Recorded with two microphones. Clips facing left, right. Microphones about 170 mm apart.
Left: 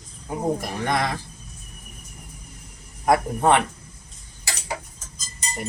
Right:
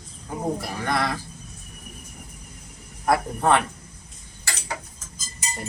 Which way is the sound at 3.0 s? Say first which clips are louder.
Left 2 dB; 20° left (ahead or behind).